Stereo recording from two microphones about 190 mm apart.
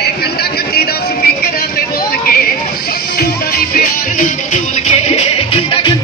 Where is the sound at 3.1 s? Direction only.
50° left (ahead or behind).